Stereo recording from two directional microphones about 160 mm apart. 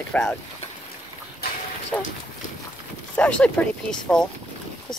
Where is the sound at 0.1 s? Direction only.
10° left (ahead or behind).